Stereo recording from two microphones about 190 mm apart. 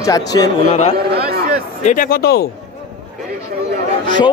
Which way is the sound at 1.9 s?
50° left (ahead or behind).